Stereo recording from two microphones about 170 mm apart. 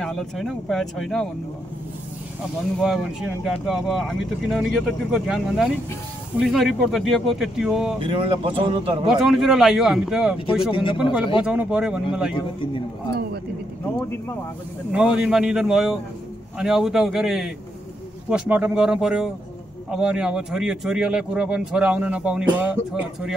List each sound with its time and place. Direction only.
0.0 s speech: centre (ahead or behind)
2.8 s speech: centre (ahead or behind)
8.0 s speech: 30° right (ahead or behind)
9.0 s speech: centre (ahead or behind)
10.7 s a man's voice: 30° left (ahead or behind)
11.4 s speech: 5° right (ahead or behind)
14.9 s speech: 5° right (ahead or behind)